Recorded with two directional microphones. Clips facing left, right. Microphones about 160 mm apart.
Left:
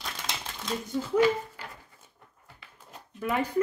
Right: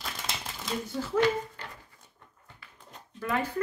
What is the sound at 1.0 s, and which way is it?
Speech, 10° left (ahead or behind).